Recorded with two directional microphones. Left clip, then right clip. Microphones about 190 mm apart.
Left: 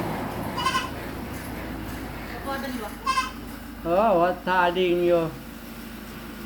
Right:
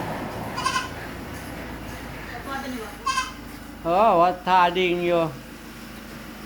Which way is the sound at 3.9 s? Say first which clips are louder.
Right 3 dB; 60° right (ahead or behind).